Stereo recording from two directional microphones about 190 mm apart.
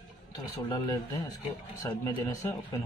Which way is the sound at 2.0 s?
15° left (ahead or behind).